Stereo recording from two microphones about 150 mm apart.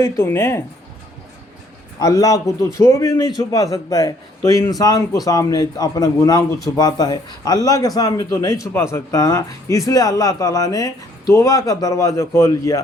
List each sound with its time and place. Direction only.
0.0 s speech: 15° left (ahead or behind)
2.0 s a man's voice: 25° left (ahead or behind)